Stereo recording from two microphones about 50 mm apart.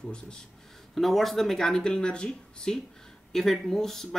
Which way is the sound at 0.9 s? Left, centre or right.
Centre.